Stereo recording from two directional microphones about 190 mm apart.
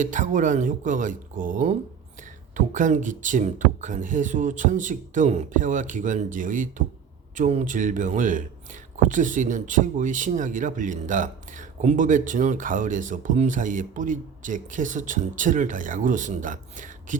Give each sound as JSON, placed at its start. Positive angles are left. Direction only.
{"t": 0.0, "sound": "speech", "side_deg": -40}